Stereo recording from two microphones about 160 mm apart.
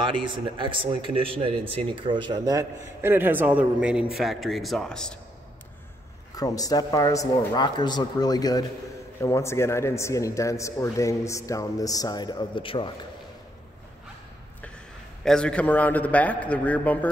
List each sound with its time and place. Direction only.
0.0 s a man's voice: 30° right (ahead or behind); by 5.2 s 5° left (ahead or behind)
6.3 s a man's voice: 25° left (ahead or behind)
15.2 s a man's voice: 5° left (ahead or behind)